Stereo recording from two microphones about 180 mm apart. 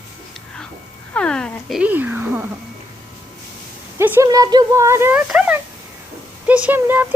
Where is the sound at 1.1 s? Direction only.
5° left (ahead or behind).